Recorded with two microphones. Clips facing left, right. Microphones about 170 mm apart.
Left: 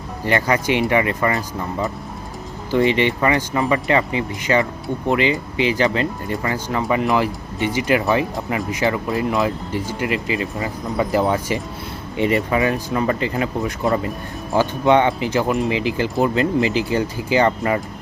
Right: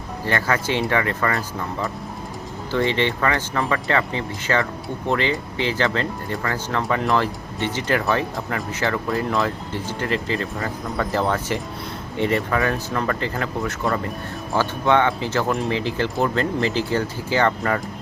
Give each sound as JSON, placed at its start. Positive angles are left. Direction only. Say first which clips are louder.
{"t": 0.3, "sound": "speech", "louder": "left 4 dB", "side_deg": 15}
{"t": 1.3, "sound": "speech", "louder": "left 2 dB", "side_deg": 0}
{"t": 2.7, "sound": "speech", "louder": "left 4 dB", "side_deg": 15}